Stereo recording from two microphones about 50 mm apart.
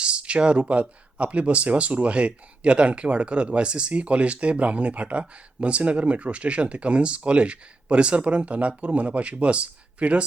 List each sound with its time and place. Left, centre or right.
0.0 s speech: right